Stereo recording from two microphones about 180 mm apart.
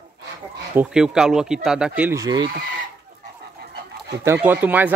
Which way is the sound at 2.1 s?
20° right (ahead or behind).